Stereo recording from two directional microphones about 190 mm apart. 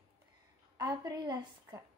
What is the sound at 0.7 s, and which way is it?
Speech, 20° right (ahead or behind).